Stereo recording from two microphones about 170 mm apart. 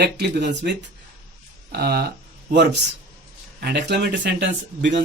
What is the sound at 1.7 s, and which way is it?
Speech, 70° right (ahead or behind).